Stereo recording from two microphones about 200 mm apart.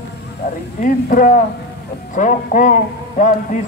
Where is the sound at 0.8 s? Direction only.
40° left (ahead or behind).